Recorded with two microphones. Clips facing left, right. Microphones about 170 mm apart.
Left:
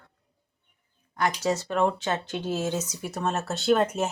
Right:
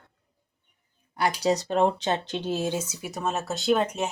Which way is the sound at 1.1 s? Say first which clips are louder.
Right 2 dB; 10° right (ahead or behind).